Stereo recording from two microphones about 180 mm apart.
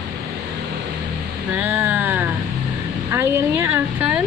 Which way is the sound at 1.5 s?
10° right (ahead or behind).